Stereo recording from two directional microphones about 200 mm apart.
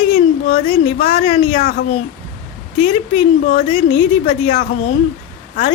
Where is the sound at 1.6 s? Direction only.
55° left (ahead or behind).